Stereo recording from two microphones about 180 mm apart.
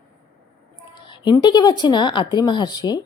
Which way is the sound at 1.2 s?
25° left (ahead or behind).